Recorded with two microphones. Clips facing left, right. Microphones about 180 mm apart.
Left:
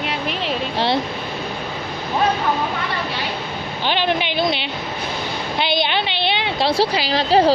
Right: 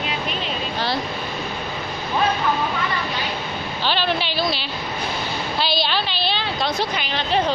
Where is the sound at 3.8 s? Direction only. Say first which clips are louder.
Left 3 dB; 15° left (ahead or behind).